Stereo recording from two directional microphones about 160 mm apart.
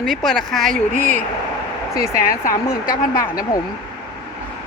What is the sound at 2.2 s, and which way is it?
Speech, 60° left (ahead or behind).